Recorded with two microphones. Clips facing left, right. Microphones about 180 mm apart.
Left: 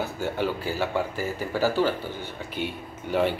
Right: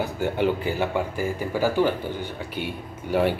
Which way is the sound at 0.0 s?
15° right (ahead or behind).